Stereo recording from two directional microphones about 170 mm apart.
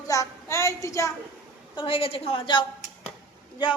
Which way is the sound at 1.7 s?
30° left (ahead or behind).